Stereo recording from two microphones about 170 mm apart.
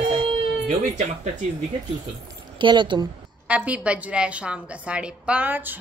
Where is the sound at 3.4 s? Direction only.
10° right (ahead or behind).